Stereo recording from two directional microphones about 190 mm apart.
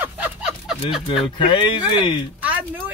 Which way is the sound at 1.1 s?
25° left (ahead or behind).